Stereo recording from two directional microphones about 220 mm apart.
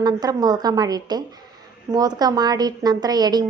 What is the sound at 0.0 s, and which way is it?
A woman's voice, 15° right (ahead or behind).